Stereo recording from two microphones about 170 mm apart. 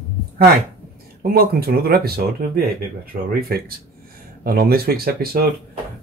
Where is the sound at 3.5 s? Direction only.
65° right (ahead or behind).